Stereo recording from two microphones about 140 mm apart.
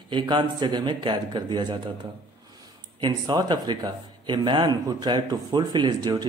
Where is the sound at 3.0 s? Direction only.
35° right (ahead or behind).